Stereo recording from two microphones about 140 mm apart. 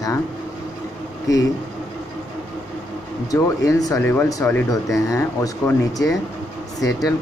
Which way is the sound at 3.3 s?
25° left (ahead or behind).